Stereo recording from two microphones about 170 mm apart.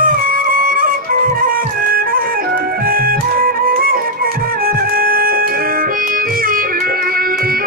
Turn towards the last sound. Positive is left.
turn(degrees=-60)  # may be behind; listen again after turning